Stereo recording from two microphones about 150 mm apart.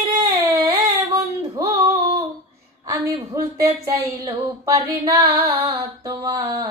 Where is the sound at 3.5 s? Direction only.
20° right (ahead or behind).